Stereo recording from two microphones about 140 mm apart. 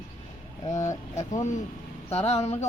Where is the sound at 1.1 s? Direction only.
60° left (ahead or behind).